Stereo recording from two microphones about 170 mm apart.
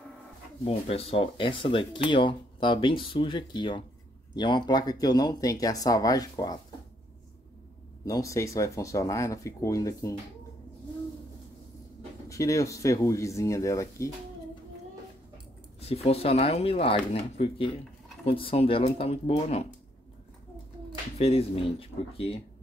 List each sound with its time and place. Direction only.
0.7 s speech: 35° left (ahead or behind)
8.0 s speech: 20° left (ahead or behind)
12.3 s speech: 20° left (ahead or behind)
15.8 s speech: 35° left (ahead or behind)
21.2 s speech: 35° left (ahead or behind)